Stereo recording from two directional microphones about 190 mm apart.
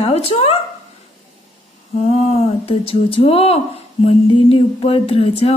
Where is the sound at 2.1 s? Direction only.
30° left (ahead or behind).